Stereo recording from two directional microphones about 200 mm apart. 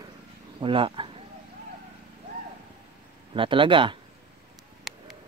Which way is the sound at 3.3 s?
25° right (ahead or behind).